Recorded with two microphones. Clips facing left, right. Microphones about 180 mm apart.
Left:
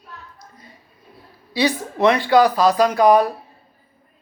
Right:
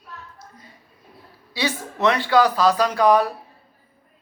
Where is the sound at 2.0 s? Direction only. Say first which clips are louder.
Left 3 dB; 15° left (ahead or behind).